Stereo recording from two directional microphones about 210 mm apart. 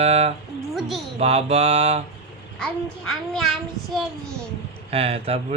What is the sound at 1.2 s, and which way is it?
Mantra, 30° right (ahead or behind).